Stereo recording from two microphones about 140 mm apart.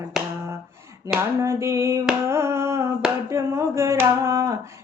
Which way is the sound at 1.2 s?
20° right (ahead or behind).